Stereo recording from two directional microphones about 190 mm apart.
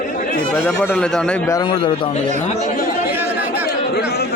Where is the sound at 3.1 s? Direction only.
10° right (ahead or behind).